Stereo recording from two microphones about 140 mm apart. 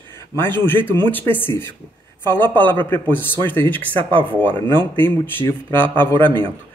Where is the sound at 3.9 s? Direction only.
35° right (ahead or behind).